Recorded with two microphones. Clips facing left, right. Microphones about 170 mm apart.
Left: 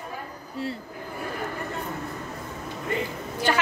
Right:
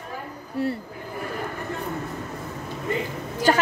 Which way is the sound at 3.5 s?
40° right (ahead or behind).